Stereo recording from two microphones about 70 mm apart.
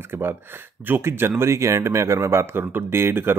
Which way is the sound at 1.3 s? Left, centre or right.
Right.